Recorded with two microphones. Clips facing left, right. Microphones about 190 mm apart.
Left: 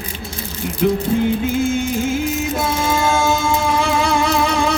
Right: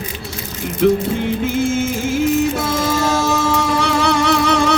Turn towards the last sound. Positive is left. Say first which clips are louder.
# right 2 dB
turn(degrees=-75)  # may be behind; listen again after turning